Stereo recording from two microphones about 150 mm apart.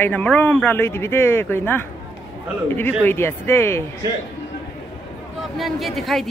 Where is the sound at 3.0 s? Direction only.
15° left (ahead or behind).